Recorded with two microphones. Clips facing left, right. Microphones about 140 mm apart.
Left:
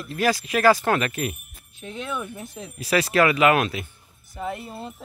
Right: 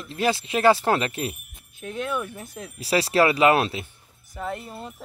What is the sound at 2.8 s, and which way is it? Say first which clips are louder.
Speech: even; 30° right (ahead or behind).